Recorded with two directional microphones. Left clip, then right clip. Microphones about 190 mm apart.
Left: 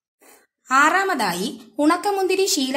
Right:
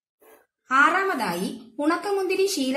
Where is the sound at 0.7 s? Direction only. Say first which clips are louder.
Left 3 dB; 40° left (ahead or behind).